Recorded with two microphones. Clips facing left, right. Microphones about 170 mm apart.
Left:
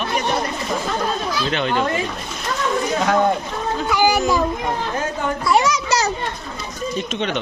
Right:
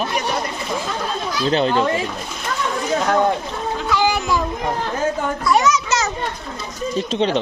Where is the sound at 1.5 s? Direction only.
35° right (ahead or behind).